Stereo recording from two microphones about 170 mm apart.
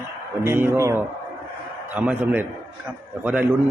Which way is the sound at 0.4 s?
15° right (ahead or behind).